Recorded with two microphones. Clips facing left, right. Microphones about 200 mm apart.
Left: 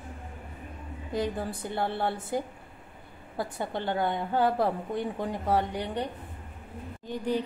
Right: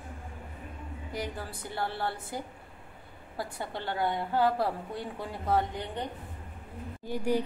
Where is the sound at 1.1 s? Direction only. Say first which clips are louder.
Left 7 dB; 20° left (ahead or behind).